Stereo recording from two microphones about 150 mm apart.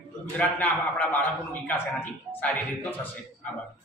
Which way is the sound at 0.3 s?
10° left (ahead or behind).